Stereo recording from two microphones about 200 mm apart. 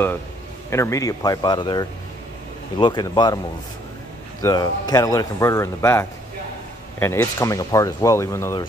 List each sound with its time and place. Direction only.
0.7 s speech: 15° left (ahead or behind)
4.4 s speech: 20° left (ahead or behind)